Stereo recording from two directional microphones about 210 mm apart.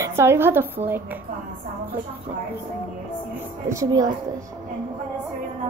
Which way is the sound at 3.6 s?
15° right (ahead or behind).